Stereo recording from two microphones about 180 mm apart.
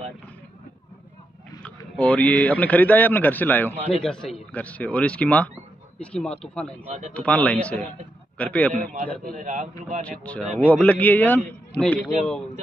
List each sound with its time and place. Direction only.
1.6 s a man's voice: 5° left (ahead or behind)
9.4 s a man's voice: 40° right (ahead or behind)
10.0 s speech: 5° left (ahead or behind)